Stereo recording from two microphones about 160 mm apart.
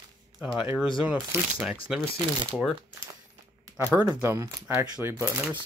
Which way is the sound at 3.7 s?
15° right (ahead or behind).